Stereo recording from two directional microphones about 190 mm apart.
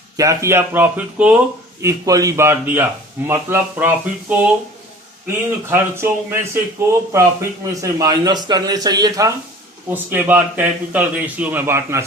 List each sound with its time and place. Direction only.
0.2 s a man's voice: 15° right (ahead or behind)
5.6 s a man's voice: 15° right (ahead or behind)